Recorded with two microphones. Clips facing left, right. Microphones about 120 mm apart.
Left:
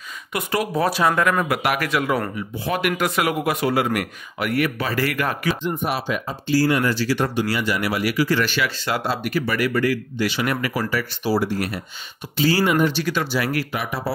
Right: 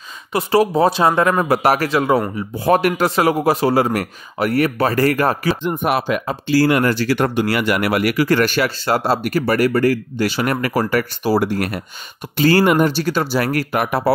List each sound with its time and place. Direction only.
0.3 s speech: 30° right (ahead or behind)
2.6 s speech: 45° right (ahead or behind)
2.9 s a man's voice: 35° right (ahead or behind)
5.6 s speech: 60° right (ahead or behind)